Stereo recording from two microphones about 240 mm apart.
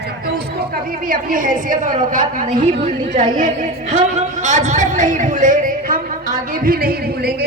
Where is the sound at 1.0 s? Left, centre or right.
Right.